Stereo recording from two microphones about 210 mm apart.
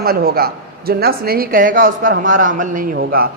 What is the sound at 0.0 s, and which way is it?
A man's voice, 45° right (ahead or behind).